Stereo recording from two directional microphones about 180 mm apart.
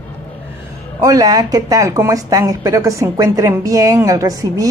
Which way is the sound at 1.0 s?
20° right (ahead or behind).